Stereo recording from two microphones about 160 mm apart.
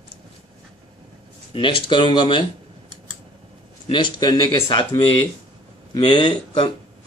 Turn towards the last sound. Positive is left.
turn(degrees=30)  # may be behind; listen again after turning